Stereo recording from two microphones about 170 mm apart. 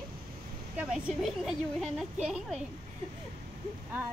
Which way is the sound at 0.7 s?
5° right (ahead or behind).